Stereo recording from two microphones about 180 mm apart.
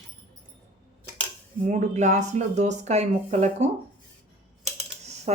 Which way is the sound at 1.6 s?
45° right (ahead or behind).